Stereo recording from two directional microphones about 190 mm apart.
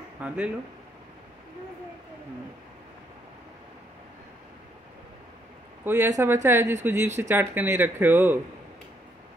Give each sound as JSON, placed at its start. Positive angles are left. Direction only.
{"t": 0.2, "sound": "speech", "side_deg": -5}
{"t": 5.9, "sound": "speech", "side_deg": -15}